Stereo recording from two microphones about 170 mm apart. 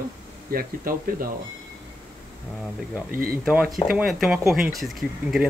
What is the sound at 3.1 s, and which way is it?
Speech, 60° right (ahead or behind).